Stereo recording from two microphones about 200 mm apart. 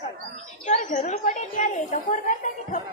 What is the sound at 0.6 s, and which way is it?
A woman's voice, 35° left (ahead or behind).